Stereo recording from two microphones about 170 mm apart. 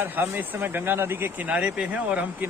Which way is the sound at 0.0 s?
10° right (ahead or behind).